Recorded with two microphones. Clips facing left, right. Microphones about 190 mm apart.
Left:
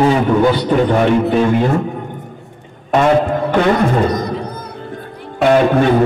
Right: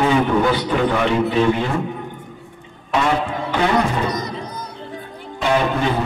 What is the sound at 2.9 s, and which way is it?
A man's voice, 50° left (ahead or behind).